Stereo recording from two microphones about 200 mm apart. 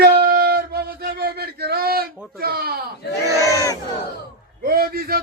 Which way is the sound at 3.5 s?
15° left (ahead or behind).